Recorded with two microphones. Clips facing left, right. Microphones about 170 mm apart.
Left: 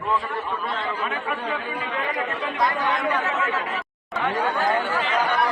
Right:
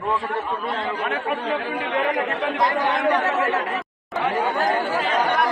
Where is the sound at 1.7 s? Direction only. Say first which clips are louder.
Right 5 dB; 70° right (ahead or behind).